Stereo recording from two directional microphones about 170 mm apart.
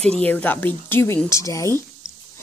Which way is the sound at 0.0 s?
5° left (ahead or behind).